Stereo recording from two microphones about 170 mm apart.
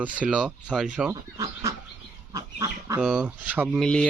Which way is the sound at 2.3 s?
20° right (ahead or behind).